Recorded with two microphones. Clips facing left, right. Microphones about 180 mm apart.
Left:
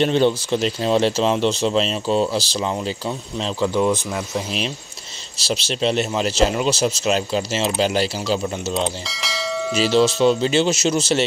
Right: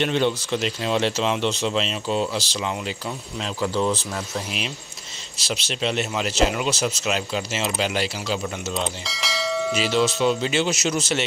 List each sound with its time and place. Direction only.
0.0 s speech: 35° left (ahead or behind)
3.6 s speech: 15° left (ahead or behind)
5.5 s speech: 35° left (ahead or behind)
9.0 s church bell: centre (ahead or behind)
9.8 s speech: 30° left (ahead or behind)